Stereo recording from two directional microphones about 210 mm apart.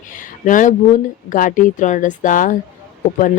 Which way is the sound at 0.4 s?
35° left (ahead or behind).